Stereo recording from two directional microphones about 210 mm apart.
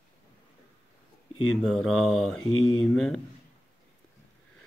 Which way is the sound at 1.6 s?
Centre (ahead or behind).